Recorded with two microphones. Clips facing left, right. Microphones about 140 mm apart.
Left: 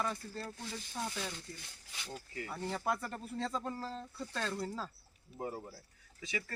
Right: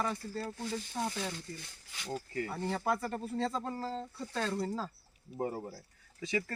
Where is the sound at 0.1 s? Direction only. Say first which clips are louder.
Right 4 dB; 10° right (ahead or behind).